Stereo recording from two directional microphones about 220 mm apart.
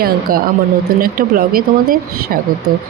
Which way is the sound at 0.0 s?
40° right (ahead or behind).